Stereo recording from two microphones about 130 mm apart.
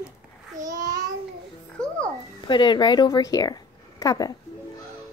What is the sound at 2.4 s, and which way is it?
A child's voice, 35° left (ahead or behind).